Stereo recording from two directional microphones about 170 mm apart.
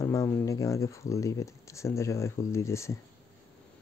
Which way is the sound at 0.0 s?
20° left (ahead or behind).